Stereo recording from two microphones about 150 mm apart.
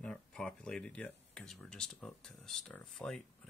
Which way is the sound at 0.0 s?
5° left (ahead or behind).